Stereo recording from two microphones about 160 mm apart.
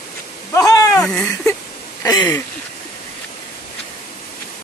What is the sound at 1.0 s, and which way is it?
Speech, 10° left (ahead or behind).